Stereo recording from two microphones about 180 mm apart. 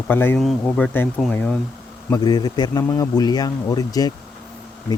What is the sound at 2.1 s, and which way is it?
A man's voice, 25° left (ahead or behind).